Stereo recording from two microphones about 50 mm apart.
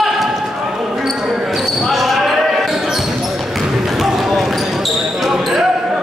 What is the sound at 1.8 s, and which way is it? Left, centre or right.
Basketball bounce, centre.